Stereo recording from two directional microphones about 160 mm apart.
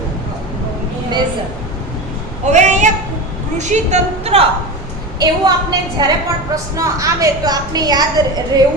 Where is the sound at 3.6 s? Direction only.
45° right (ahead or behind).